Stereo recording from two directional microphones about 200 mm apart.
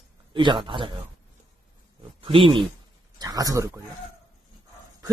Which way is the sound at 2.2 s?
25° right (ahead or behind).